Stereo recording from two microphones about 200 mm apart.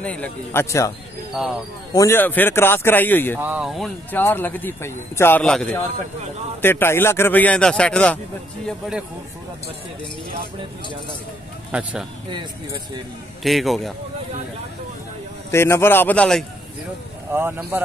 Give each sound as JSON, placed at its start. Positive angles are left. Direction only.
{"t": 0.0, "sound": "a man's voice", "side_deg": 5}
{"t": 1.4, "sound": "speech", "side_deg": 0}
{"t": 2.0, "sound": "a man's voice", "side_deg": 10}
{"t": 3.3, "sound": "speech", "side_deg": -5}
{"t": 4.2, "sound": "a man's voice", "side_deg": 10}
{"t": 11.7, "sound": "speech", "side_deg": -5}
{"t": 12.3, "sound": "speech", "side_deg": -25}
{"t": 13.4, "sound": "speech", "side_deg": 0}
{"t": 15.5, "sound": "a man's voice", "side_deg": 10}
{"t": 17.3, "sound": "a man's voice", "side_deg": -10}